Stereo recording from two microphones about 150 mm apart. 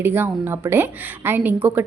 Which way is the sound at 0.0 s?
15° right (ahead or behind).